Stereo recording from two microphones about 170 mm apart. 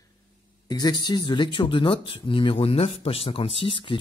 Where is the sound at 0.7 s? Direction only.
25° left (ahead or behind).